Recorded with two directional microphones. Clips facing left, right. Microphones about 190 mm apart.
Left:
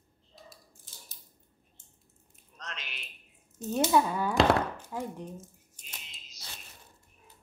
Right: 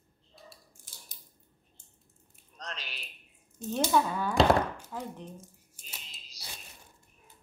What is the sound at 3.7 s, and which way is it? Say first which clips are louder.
Speech: left 2 dB; 5° left (ahead or behind).